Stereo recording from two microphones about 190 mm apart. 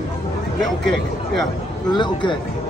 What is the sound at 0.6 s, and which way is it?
A man's voice, centre (ahead or behind).